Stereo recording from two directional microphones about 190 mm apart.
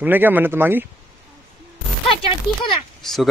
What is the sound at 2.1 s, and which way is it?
Speech, 25° left (ahead or behind).